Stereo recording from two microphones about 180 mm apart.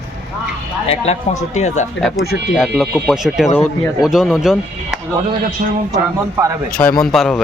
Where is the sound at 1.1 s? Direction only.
35° left (ahead or behind).